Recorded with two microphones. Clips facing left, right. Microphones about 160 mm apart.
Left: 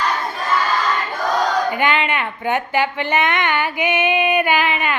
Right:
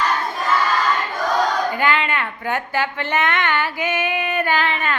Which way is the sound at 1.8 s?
20° left (ahead or behind).